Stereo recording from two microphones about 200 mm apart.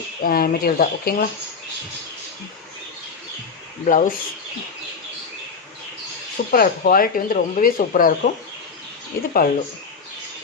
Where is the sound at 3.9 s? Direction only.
40° left (ahead or behind).